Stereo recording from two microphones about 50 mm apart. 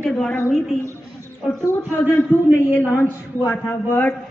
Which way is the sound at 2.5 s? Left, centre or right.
Left.